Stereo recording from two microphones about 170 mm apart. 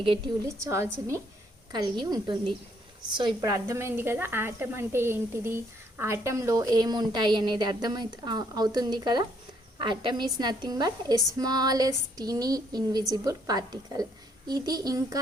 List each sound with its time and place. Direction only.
0.4 s a woman's voice: 15° right (ahead or behind)